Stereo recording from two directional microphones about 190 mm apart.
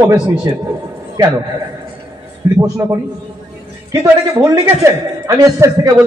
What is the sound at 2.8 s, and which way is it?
A man's voice, 15° right (ahead or behind).